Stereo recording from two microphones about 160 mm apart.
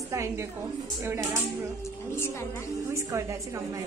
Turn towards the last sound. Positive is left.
turn(degrees=-20)  # may be behind; listen again after turning